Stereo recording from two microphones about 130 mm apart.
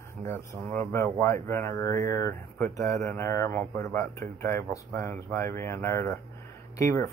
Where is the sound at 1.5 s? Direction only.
20° left (ahead or behind).